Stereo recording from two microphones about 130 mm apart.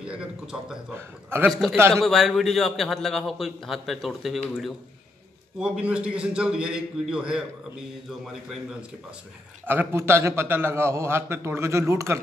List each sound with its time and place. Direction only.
0.0 s a man's voice: 5° right (ahead or behind)
0.9 s a man's voice: 20° right (ahead or behind)
1.5 s a man's voice: centre (ahead or behind)
1.8 s a man's voice: 20° right (ahead or behind)
2.0 s a man's voice: centre (ahead or behind)
9.7 s a man's voice: 20° right (ahead or behind)